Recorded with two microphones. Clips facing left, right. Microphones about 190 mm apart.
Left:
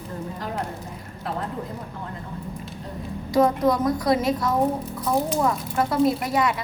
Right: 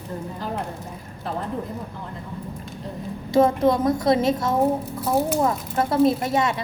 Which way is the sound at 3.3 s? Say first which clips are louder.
Right 2 dB; 25° right (ahead or behind).